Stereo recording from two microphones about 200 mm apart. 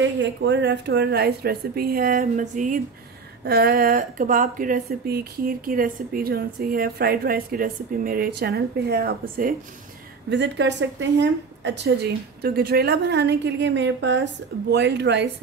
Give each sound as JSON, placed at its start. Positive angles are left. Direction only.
{"t": 0.0, "sound": "speech", "side_deg": -65}
{"t": 10.3, "sound": "a woman's voice", "side_deg": -60}